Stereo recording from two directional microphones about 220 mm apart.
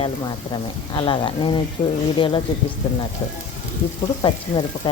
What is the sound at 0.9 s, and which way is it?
Sizzle, 20° left (ahead or behind).